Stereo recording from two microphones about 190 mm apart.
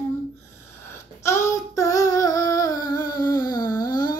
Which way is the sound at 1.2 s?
15° left (ahead or behind).